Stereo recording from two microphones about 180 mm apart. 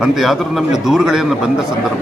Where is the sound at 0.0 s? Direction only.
Centre (ahead or behind).